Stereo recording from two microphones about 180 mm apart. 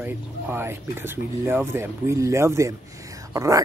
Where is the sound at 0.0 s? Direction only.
10° right (ahead or behind).